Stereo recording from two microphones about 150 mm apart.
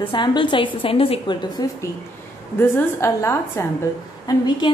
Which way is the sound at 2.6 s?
15° left (ahead or behind).